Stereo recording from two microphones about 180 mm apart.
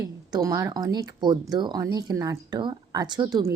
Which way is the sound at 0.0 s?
20° right (ahead or behind).